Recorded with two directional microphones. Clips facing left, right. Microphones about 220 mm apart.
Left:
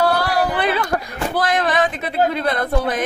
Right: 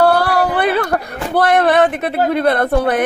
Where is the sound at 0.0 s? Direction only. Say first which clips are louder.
Right 5 dB; 60° right (ahead or behind).